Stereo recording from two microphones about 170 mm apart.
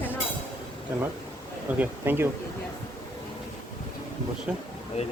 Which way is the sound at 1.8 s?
10° right (ahead or behind).